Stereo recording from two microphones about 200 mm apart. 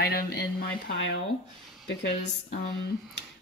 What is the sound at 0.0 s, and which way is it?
Speech, 50° left (ahead or behind).